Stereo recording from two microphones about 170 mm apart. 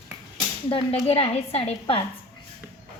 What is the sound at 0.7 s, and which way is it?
A woman's voice, 35° left (ahead or behind).